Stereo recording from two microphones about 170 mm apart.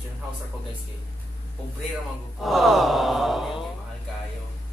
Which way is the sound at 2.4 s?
Centre (ahead or behind).